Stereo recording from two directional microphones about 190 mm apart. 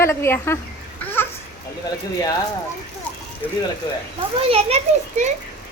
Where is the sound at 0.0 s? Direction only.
15° left (ahead or behind).